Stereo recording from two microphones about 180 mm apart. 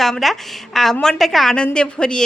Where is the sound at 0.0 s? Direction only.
Centre (ahead or behind).